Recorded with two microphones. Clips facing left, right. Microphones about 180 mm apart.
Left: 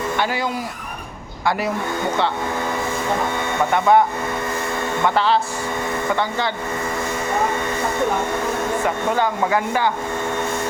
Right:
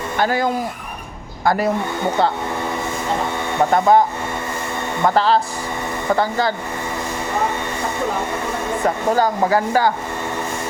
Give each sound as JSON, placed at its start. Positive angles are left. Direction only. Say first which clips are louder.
{"t": 0.2, "sound": "speech", "louder": "right 8 dB", "side_deg": -45}
{"t": 3.7, "sound": "speech", "louder": "right 1 dB", "side_deg": -35}
{"t": 5.0, "sound": "speech", "louder": "right 3 dB", "side_deg": -40}
{"t": 9.1, "sound": "speech", "louder": "right 3 dB", "side_deg": -35}